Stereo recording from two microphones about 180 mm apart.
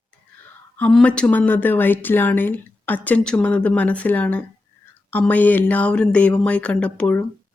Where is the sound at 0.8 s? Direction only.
5° left (ahead or behind).